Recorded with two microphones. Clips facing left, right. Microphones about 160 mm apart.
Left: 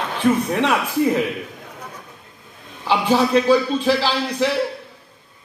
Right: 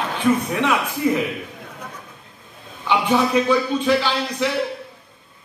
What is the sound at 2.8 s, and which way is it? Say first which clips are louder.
A man's voice: left 1 dB; 30° left (ahead or behind).